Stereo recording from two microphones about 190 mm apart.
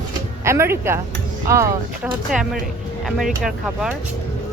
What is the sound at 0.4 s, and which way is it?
Speech, 15° right (ahead or behind).